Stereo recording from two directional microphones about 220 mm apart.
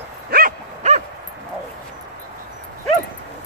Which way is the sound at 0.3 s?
40° right (ahead or behind).